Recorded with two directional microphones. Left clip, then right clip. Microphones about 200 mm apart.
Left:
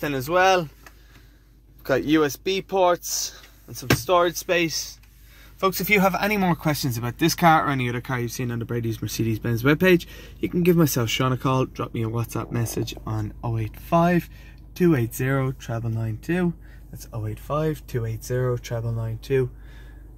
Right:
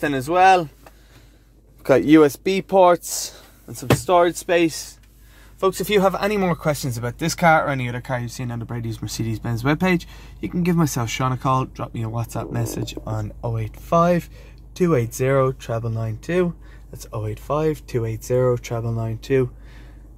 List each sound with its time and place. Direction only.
0.0 s speech: 20° right (ahead or behind)
1.8 s speech: 30° right (ahead or behind)